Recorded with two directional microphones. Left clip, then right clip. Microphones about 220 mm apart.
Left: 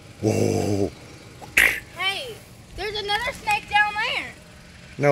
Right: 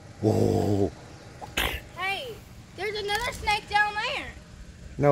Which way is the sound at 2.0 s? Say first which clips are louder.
Left 4 dB; 40° left (ahead or behind).